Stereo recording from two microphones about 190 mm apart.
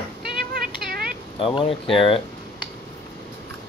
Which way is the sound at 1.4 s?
30° left (ahead or behind).